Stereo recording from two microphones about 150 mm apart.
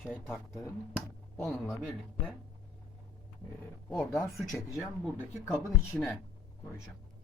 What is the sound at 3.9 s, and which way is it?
Speech, 5° left (ahead or behind).